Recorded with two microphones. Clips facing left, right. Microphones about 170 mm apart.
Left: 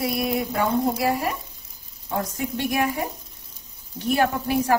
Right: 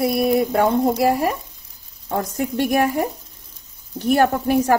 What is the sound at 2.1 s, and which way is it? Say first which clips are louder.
A woman's voice: right 4 dB; 45° right (ahead or behind).